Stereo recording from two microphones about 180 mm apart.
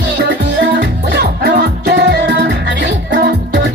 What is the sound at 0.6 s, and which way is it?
Music, 75° right (ahead or behind).